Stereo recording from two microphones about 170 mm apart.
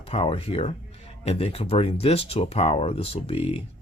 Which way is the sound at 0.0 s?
35° left (ahead or behind).